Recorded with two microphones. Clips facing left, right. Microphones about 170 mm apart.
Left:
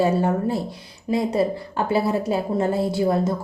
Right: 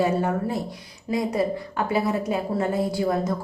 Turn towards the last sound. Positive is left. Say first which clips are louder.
# left 3 dB
turn(degrees=30)  # may be behind; listen again after turning